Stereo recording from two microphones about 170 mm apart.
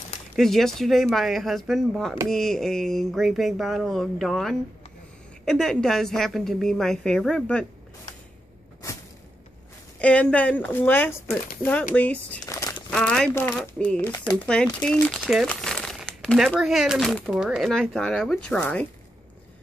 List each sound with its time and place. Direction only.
0.4 s speech: centre (ahead or behind)
9.9 s speech: 5° left (ahead or behind)
12.4 s crumpling: 20° left (ahead or behind)
12.9 s speech: 5° left (ahead or behind)